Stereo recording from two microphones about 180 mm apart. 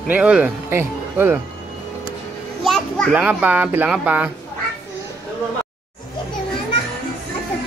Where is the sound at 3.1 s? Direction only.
10° right (ahead or behind).